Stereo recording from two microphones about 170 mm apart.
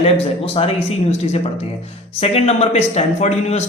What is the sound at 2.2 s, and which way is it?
Speech, 40° left (ahead or behind).